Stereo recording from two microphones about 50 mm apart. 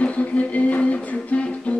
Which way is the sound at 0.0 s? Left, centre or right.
Left.